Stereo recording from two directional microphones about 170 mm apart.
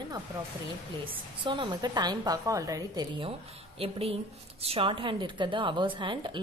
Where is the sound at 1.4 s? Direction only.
30° right (ahead or behind).